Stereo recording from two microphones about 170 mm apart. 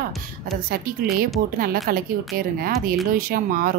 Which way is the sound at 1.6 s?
60° right (ahead or behind).